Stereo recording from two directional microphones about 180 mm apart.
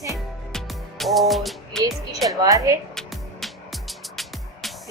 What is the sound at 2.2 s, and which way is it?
Speech, 20° right (ahead or behind).